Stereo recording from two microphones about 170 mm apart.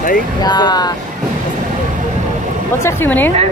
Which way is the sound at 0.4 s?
25° left (ahead or behind).